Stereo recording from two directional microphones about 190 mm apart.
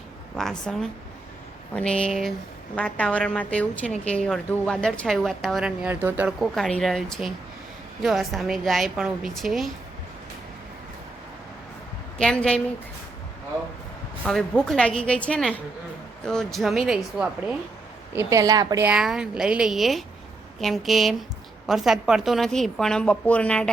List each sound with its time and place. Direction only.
0.3 s a woman's voice: 5° left (ahead or behind)
12.2 s a woman's voice: 5° left (ahead or behind)
14.3 s a woman's voice: 5° left (ahead or behind)
18.1 s a woman's voice: 15° right (ahead or behind)
18.9 s a woman's voice: 5° right (ahead or behind)